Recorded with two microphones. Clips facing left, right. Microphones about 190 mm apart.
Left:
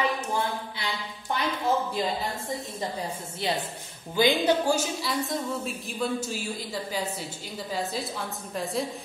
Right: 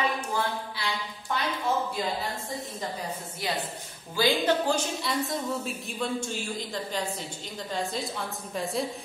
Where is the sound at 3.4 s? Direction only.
25° left (ahead or behind).